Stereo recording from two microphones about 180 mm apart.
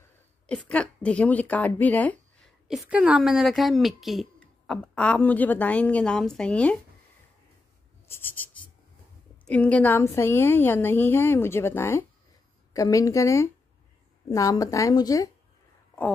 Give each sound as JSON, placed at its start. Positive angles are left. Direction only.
{"t": 0.5, "sound": "speech", "side_deg": 5}
{"t": 2.7, "sound": "speech", "side_deg": -5}
{"t": 8.1, "sound": "writing", "side_deg": 10}
{"t": 9.5, "sound": "a woman's voice", "side_deg": 5}